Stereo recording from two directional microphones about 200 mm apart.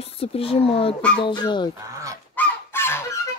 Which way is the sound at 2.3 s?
10° left (ahead or behind).